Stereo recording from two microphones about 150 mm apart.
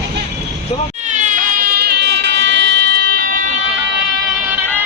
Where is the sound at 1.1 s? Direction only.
55° right (ahead or behind); by 3.5 s 90° right.